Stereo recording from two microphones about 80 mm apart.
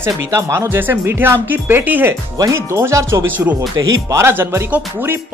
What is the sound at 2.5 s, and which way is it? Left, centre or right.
Speech, right.